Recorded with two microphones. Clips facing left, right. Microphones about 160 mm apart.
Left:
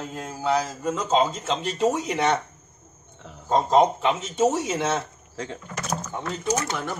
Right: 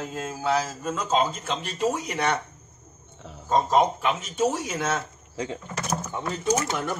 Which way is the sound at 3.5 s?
25° left (ahead or behind).